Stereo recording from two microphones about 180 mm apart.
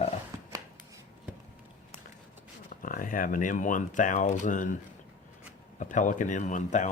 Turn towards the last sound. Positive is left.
turn(degrees=45)  # may be behind; listen again after turning